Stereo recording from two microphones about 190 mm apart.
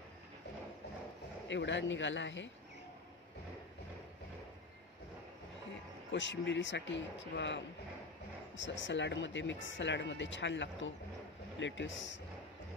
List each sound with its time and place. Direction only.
1.5 s speech: 70° left (ahead or behind)
6.1 s speech: 70° left (ahead or behind)